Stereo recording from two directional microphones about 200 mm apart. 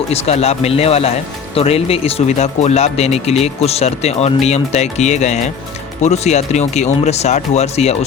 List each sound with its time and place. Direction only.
0.1 s speech: 30° left (ahead or behind)